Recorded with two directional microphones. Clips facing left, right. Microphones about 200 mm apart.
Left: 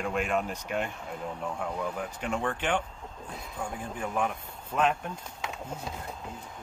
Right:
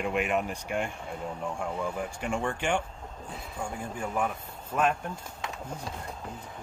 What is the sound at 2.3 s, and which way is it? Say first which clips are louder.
Speech: even; 10° right (ahead or behind).